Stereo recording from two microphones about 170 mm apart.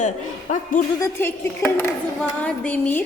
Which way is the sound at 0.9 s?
15° left (ahead or behind).